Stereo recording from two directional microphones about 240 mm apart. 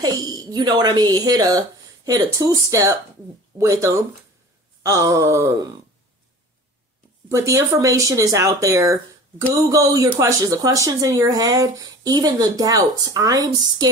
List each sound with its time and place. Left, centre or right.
0.2 s speech: centre
7.2 s speech: centre